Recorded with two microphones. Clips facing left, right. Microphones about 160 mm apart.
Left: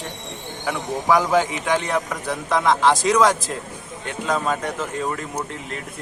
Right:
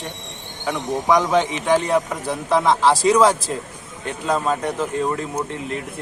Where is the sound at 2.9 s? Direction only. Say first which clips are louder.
Right 2 dB; 30° right (ahead or behind).